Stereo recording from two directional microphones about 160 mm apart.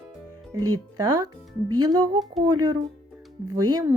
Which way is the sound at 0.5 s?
25° right (ahead or behind).